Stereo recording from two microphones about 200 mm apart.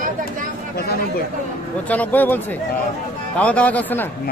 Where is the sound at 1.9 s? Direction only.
10° left (ahead or behind).